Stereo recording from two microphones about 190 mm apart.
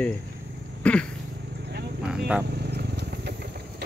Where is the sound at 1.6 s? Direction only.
60° right (ahead or behind).